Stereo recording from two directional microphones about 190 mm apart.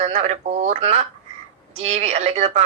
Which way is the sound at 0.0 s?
40° right (ahead or behind).